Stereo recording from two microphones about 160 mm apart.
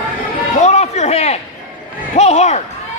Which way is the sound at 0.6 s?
45° left (ahead or behind).